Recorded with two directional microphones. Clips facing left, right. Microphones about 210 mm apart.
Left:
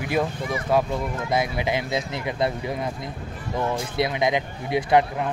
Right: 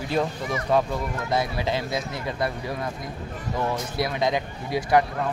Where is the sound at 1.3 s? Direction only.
15° left (ahead or behind).